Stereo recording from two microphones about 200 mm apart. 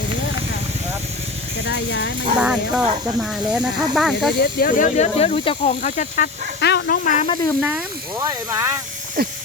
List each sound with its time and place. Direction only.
1.6 s speech: 60° left (ahead or behind)
2.4 s speech: 5° right (ahead or behind)
4.4 s speech: 50° left (ahead or behind)
6.6 s speech: 55° left (ahead or behind)
8.2 s speech: 15° right (ahead or behind)
9.2 s a sound: 50° right (ahead or behind)